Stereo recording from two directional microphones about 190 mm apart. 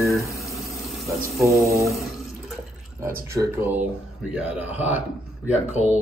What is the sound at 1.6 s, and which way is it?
Speech, 15° right (ahead or behind).